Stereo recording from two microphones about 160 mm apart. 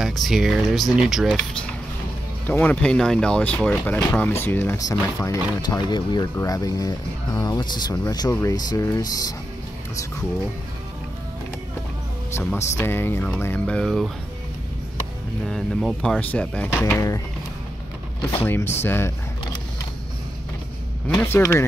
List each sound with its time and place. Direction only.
0.0 s speech: centre (ahead or behind)
2.4 s speech: 10° left (ahead or behind)
12.5 s speech: 15° left (ahead or behind)
15.4 s speech: 5° left (ahead or behind)
18.3 s speech: 15° left (ahead or behind)
21.2 s speech: 15° left (ahead or behind)